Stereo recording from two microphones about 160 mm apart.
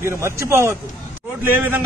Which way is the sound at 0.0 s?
15° right (ahead or behind).